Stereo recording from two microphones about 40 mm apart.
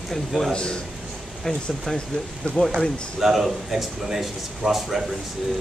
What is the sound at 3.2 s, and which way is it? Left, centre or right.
Speech, centre.